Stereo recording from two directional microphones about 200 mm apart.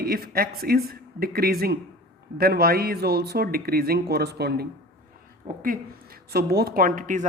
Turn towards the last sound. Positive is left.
turn(degrees=-40)  # may be behind; listen again after turning